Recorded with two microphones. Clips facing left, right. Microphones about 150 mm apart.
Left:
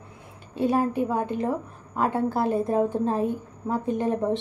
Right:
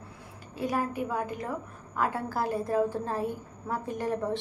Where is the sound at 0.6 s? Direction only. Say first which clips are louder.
Left 7 dB; 25° left (ahead or behind).